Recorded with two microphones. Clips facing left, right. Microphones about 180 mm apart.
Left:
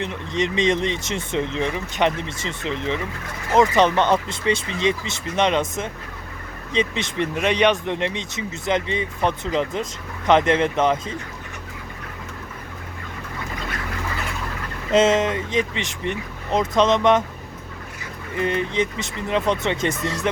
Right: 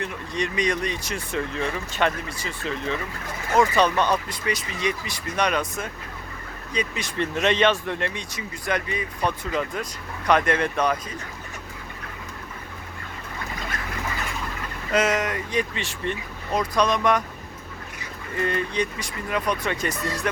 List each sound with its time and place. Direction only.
0.0 s speech: 20° left (ahead or behind)
14.9 s speech: 25° left (ahead or behind)
18.3 s speech: 20° left (ahead or behind)